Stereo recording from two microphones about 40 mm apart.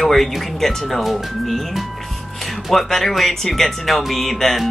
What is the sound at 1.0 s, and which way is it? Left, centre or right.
Speech, centre.